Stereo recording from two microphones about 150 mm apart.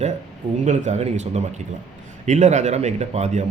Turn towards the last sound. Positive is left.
turn(degrees=-50)  # may be behind; listen again after turning